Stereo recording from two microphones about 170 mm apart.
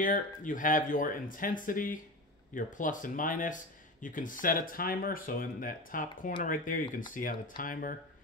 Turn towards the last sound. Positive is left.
turn(degrees=55)  # may be behind; listen again after turning